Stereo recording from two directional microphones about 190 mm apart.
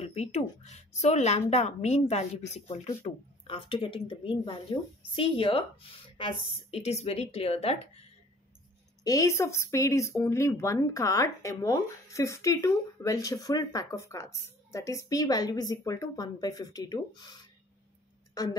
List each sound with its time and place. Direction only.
0.0 s a woman's voice: 35° left (ahead or behind)
9.0 s speech: 15° left (ahead or behind)
18.3 s speech: 20° left (ahead or behind)